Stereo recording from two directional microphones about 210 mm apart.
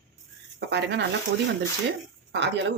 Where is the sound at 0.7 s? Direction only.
55° right (ahead or behind).